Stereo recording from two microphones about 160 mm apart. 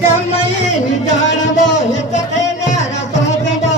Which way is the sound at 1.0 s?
50° left (ahead or behind).